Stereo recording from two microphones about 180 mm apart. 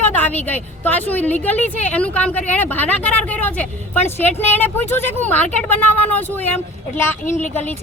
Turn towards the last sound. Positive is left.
turn(degrees=10)  # may be behind; listen again after turning